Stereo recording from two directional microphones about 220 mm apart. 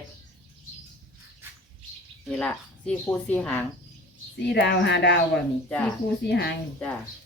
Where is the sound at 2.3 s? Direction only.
5° left (ahead or behind).